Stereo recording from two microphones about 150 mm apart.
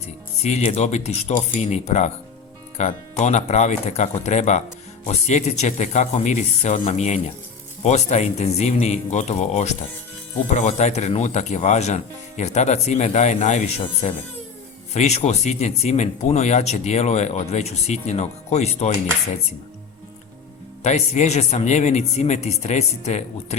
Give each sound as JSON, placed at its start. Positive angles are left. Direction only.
{"t": 0.4, "sound": "speech", "side_deg": 45}
{"t": 20.8, "sound": "speech", "side_deg": 50}